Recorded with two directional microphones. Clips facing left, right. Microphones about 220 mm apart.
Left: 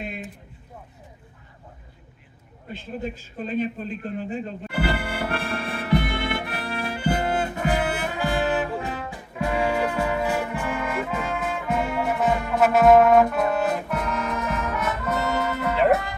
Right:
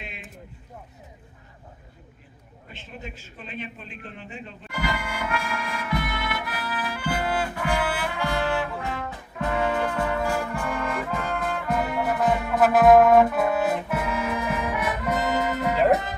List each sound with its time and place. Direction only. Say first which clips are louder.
0.0 s a sound: left 8 dB; 45° left (ahead or behind)
3.0 s a man's voice: left 9 dB; 40° left (ahead or behind)
5.0 s music: left 2 dB; 35° left (ahead or behind); by 16.1 s 15° right (ahead or behind)